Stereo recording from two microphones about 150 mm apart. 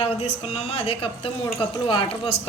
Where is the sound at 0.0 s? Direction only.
45° left (ahead or behind).